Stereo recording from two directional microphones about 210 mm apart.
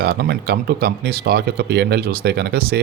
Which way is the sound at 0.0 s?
50° right (ahead or behind).